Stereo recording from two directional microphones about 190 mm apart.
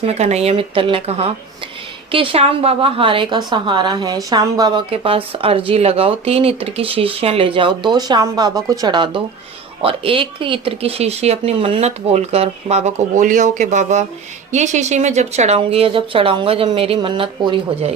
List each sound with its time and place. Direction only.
0.0 s a woman's voice: 35° right (ahead or behind)